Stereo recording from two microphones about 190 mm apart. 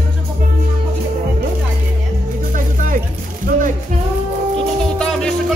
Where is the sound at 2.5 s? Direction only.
45° right (ahead or behind).